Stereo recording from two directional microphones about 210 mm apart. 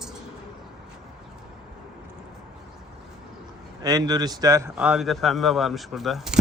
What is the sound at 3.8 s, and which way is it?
Speech, 20° right (ahead or behind).